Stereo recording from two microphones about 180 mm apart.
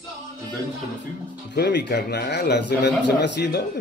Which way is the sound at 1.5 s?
65° left (ahead or behind).